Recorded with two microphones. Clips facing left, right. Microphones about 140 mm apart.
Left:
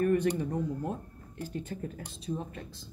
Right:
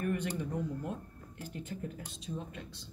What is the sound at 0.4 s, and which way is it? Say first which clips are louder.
Speech: left 4 dB; 40° left (ahead or behind).